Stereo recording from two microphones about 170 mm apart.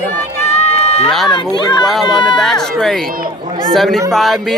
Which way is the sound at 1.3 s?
25° left (ahead or behind).